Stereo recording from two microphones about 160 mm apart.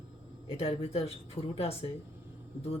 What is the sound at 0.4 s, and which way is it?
A woman's voice, 35° left (ahead or behind).